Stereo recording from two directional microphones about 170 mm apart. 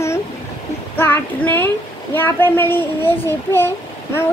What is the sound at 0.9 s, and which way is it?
Child singing, 10° left (ahead or behind).